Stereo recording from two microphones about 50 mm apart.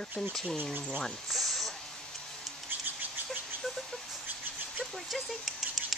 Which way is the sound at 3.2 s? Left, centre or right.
Centre.